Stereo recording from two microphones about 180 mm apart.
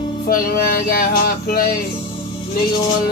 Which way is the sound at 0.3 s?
55° left (ahead or behind).